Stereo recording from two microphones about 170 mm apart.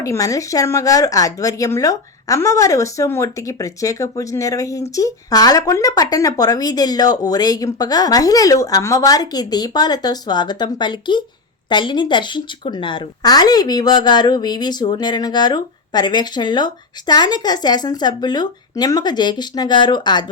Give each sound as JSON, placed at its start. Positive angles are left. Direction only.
{"t": 0.0, "sound": "a woman's voice", "side_deg": 20}